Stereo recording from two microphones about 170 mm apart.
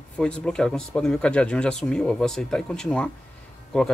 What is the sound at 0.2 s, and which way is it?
Speech, 5° left (ahead or behind).